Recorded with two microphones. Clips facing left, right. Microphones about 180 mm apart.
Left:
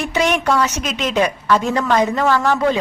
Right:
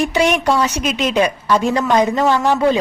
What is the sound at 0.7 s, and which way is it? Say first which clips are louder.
A woman's voice: right 2 dB; 15° right (ahead or behind).